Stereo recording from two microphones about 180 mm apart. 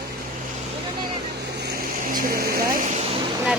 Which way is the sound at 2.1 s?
55° right (ahead or behind).